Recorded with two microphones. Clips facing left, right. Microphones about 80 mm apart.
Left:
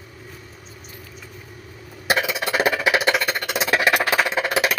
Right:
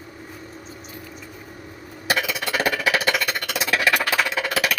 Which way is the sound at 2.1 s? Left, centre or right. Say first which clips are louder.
Left 2 dB; left.